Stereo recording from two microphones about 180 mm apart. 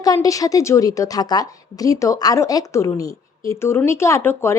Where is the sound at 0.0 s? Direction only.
20° left (ahead or behind).